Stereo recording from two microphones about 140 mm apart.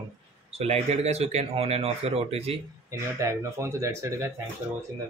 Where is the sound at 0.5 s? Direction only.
50° right (ahead or behind).